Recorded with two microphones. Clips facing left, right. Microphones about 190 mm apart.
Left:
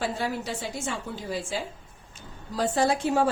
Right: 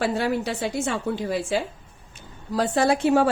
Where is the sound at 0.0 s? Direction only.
70° right (ahead or behind).